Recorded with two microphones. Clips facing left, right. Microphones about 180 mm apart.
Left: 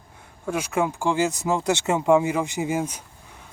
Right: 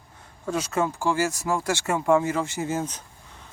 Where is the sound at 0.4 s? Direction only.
10° left (ahead or behind).